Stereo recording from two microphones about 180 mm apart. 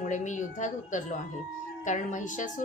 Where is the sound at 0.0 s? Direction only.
45° left (ahead or behind).